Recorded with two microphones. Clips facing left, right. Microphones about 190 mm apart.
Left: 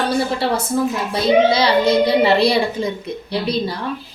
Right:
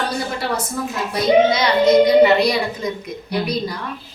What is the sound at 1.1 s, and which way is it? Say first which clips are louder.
A child's voice: even; 30° left (ahead or behind).